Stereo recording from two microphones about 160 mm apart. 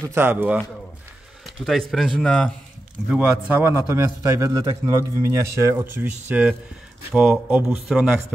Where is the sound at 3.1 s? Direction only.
15° right (ahead or behind).